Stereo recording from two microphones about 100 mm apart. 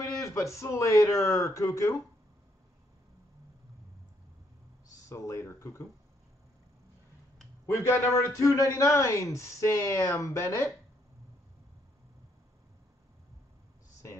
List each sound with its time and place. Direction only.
0.0 s a man's voice: 30° left (ahead or behind)
5.1 s speech: 30° left (ahead or behind)
7.6 s a man's voice: 25° left (ahead or behind)